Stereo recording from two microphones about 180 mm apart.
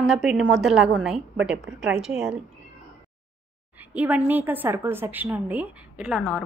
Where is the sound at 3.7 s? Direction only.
10° right (ahead or behind).